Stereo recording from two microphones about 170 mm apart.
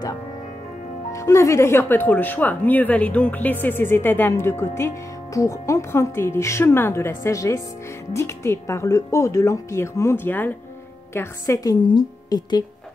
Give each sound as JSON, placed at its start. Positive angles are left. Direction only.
{"t": 1.1, "sound": "a woman's voice", "side_deg": 15}